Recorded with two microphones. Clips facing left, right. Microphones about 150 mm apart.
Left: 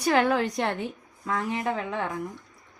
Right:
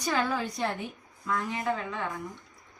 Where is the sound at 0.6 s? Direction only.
85° left.